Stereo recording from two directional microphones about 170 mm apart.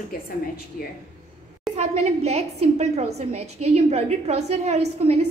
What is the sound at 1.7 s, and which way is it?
A woman's voice, 40° right (ahead or behind).